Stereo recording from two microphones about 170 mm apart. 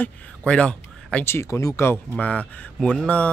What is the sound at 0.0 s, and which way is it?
Speech, 5° left (ahead or behind).